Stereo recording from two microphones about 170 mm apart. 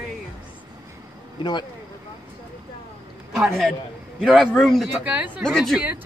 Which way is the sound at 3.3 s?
Centre (ahead or behind).